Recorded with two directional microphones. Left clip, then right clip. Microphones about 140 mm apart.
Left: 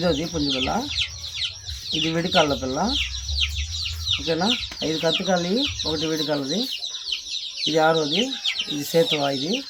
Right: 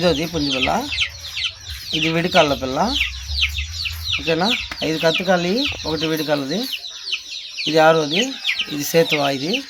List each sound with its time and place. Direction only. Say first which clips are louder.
0.0 s speech: right 4 dB; 35° right (ahead or behind)
1.9 s speech: right 4 dB; 35° right (ahead or behind)
4.3 s speech: right 6 dB; 35° right (ahead or behind)
7.6 s speech: right 5 dB; 30° right (ahead or behind)